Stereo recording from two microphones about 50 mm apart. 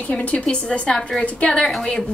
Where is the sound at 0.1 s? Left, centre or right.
Left.